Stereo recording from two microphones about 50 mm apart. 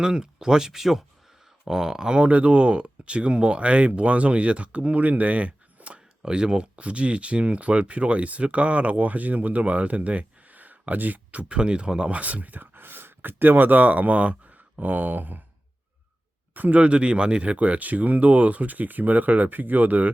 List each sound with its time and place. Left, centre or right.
0.0 s speech: centre; by 6.0 s right
6.2 s speech: centre; by 15.4 s right
16.6 s speech: right